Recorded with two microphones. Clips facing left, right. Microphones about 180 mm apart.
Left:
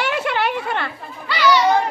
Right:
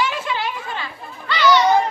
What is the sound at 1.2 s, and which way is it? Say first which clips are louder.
Speech: right 1 dB; 10° left (ahead or behind).